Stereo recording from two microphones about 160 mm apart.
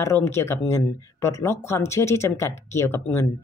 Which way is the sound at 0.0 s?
15° left (ahead or behind).